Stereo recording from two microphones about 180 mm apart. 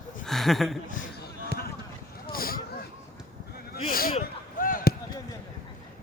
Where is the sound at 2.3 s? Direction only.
55° left (ahead or behind).